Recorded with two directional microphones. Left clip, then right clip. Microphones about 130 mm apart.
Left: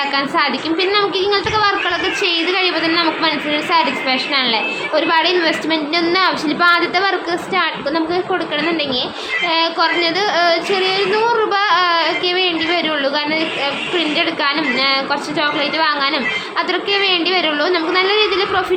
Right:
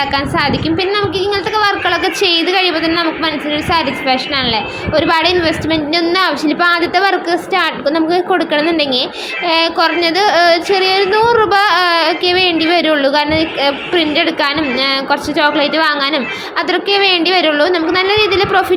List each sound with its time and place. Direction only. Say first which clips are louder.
0.3 s a woman's voice: right 2 dB; 25° right (ahead or behind)
1.9 s child singing: right 4 dB; 35° right (ahead or behind)
3.0 s a woman's voice: right 1 dB; 25° right (ahead or behind)
6.1 s child singing: right 2 dB; 25° right (ahead or behind)
13.6 s child singing: right 5 dB; 45° right (ahead or behind)